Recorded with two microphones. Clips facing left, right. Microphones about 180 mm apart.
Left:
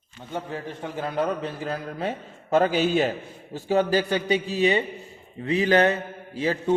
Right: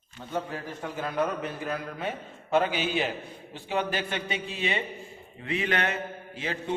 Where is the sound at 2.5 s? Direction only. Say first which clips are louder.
Left 5 dB; 45° left (ahead or behind).